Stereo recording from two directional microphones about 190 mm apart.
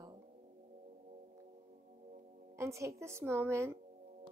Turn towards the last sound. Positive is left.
turn(degrees=-15)  # may be behind; listen again after turning